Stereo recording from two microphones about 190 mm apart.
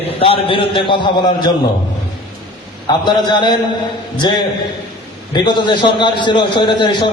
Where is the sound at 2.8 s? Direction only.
25° left (ahead or behind).